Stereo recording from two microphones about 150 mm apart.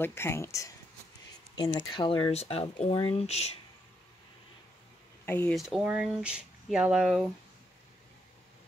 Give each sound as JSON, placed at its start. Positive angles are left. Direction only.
{"t": 0.0, "sound": "speech", "side_deg": 15}
{"t": 5.2, "sound": "speech", "side_deg": 15}
{"t": 5.5, "sound": "speech", "side_deg": 0}